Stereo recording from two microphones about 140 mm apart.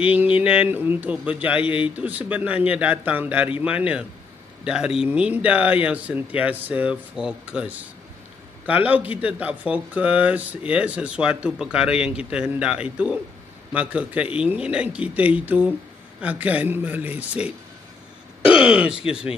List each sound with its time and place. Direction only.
0.1 s speech: 10° right (ahead or behind)
1.6 s speech: 40° left (ahead or behind)
2.0 s speech: 10° right (ahead or behind)
18.6 s speech: 5° right (ahead or behind)